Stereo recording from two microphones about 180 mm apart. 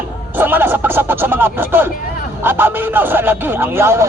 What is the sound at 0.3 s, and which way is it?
Speech, 10° right (ahead or behind).